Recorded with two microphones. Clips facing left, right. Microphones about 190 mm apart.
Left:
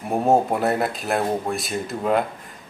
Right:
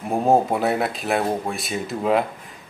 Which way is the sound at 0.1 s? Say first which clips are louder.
Even; centre (ahead or behind).